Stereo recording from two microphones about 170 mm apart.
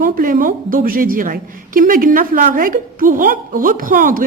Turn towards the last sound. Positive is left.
turn(degrees=-55)  # may be behind; listen again after turning